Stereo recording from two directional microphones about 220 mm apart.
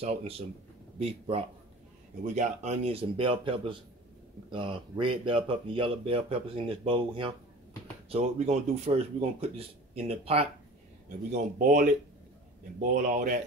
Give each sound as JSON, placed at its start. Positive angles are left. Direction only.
{"t": 0.0, "sound": "speech", "side_deg": -25}
{"t": 11.5, "sound": "speech", "side_deg": -35}